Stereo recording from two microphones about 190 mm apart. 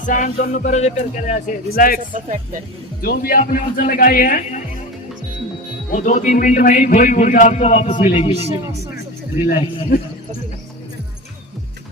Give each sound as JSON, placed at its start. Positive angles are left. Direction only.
{"t": 0.0, "sound": "a man's voice", "side_deg": 40}
{"t": 2.1, "sound": "speech", "side_deg": -40}
{"t": 3.0, "sound": "a man's voice", "side_deg": 50}
{"t": 5.9, "sound": "a man's voice", "side_deg": 40}